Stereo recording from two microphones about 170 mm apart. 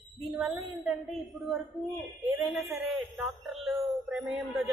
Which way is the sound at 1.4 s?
Centre (ahead or behind).